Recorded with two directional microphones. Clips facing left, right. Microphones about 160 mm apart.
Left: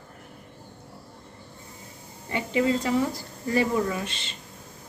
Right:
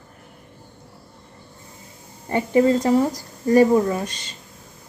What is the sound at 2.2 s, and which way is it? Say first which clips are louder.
Speech: right 7 dB; 45° right (ahead or behind).